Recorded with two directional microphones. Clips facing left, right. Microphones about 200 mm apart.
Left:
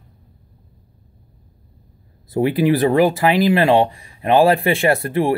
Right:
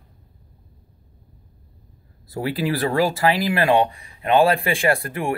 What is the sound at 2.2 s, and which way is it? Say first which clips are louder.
Speech: left 8 dB; 20° left (ahead or behind).